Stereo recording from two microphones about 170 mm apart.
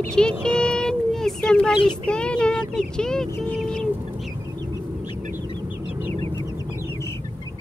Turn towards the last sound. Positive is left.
turn(degrees=-35)  # may be behind; listen again after turning